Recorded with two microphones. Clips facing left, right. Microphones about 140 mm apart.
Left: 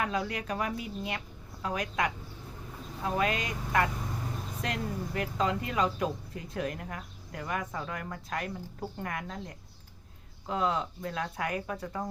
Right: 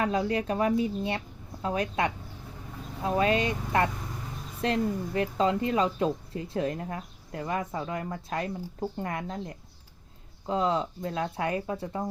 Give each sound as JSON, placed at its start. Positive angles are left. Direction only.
{"t": 0.0, "sound": "speech", "side_deg": -30}